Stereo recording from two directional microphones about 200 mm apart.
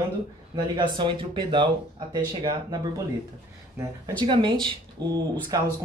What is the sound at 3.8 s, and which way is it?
Speech, 25° right (ahead or behind).